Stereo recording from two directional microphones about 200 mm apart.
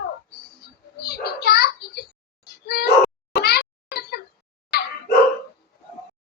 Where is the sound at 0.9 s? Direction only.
50° left (ahead or behind).